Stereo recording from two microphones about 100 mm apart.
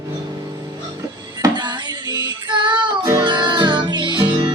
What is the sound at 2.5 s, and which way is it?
Child singing, 50° right (ahead or behind).